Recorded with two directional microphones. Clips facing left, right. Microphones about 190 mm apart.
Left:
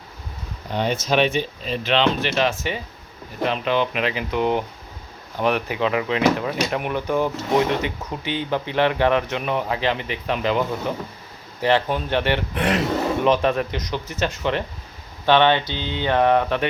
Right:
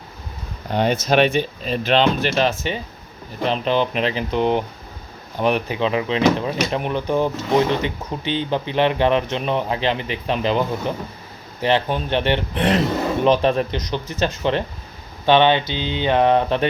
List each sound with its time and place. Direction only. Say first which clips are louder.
0.7 s speech: right 3 dB; 55° right (ahead or behind); by 10.6 s 25° right (ahead or behind)
11.6 s speech: even; 20° right (ahead or behind)
15.3 s speech: right 2 dB; 20° right (ahead or behind)